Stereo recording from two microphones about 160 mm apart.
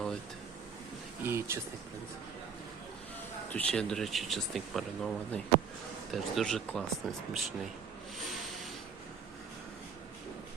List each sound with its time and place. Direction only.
1.2 s speech: 15° right (ahead or behind)
3.5 s speech: 5° left (ahead or behind)